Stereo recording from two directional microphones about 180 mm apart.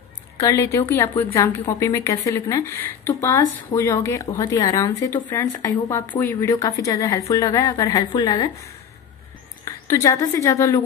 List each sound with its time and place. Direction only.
0.4 s a woman's voice: 15° left (ahead or behind)